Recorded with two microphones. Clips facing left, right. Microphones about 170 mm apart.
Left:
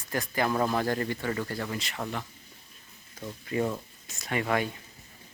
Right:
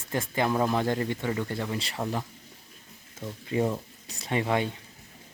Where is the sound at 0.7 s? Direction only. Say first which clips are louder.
Right 1 dB; 20° right (ahead or behind).